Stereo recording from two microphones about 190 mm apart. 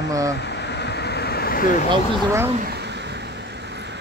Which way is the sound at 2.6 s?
60° right (ahead or behind).